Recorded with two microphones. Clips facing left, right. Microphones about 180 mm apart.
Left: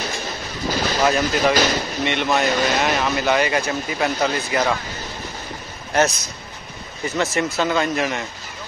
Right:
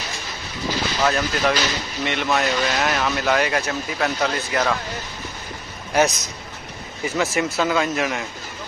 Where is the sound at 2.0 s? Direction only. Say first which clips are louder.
Left 1 dB; centre (ahead or behind).